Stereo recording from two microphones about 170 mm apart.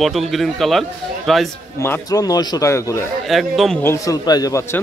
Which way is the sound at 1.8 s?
20° left (ahead or behind).